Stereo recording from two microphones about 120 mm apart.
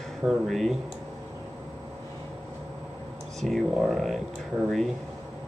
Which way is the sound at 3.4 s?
Centre (ahead or behind).